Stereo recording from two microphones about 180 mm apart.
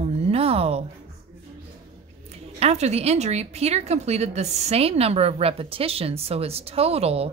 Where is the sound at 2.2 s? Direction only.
35° right (ahead or behind).